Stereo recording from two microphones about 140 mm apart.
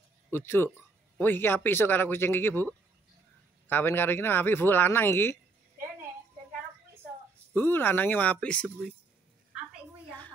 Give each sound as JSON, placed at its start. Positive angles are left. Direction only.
{"t": 0.3, "sound": "speech", "side_deg": 15}
{"t": 7.5, "sound": "speech", "side_deg": 15}